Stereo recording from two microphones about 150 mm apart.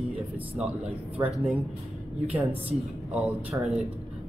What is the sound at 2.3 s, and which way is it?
A man's voice, 10° right (ahead or behind).